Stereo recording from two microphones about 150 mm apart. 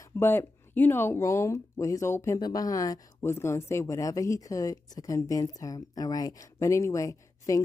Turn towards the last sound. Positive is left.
turn(degrees=20)  # may be behind; listen again after turning